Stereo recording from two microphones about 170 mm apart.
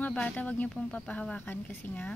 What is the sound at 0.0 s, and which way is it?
Speech, 10° left (ahead or behind).